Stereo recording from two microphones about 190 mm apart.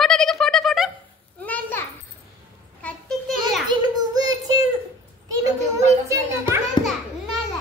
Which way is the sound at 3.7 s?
20° right (ahead or behind).